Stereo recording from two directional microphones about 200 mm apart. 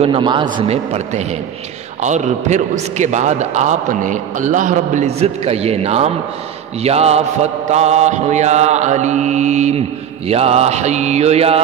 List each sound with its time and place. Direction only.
0.0 s a man's voice: 25° right (ahead or behind)